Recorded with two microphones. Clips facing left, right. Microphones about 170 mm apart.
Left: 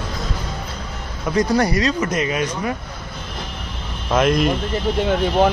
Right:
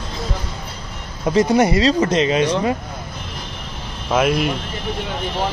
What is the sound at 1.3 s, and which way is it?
Speech, 25° right (ahead or behind).